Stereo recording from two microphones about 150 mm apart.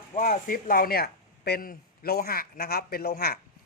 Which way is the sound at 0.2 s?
60° left (ahead or behind).